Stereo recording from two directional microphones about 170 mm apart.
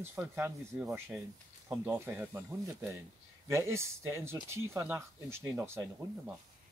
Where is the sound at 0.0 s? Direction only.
10° right (ahead or behind).